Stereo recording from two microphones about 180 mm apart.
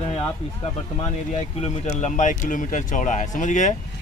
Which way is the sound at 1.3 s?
35° left (ahead or behind).